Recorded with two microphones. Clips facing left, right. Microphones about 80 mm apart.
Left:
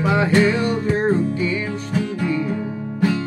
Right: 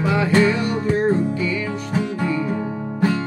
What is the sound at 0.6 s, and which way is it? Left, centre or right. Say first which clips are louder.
Music: even; left.